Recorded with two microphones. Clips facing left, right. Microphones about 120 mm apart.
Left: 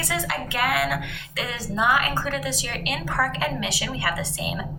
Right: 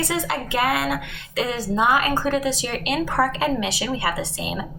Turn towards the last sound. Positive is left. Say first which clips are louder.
# right 2 dB
turn(degrees=-25)  # may be behind; listen again after turning